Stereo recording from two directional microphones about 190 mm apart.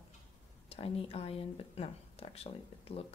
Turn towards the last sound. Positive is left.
turn(degrees=30)  # may be behind; listen again after turning